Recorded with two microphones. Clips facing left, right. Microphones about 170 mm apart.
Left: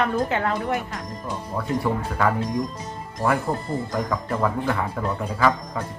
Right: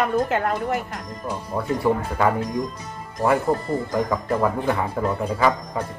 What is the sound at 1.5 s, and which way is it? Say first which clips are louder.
Speech: right 3 dB; 15° right (ahead or behind).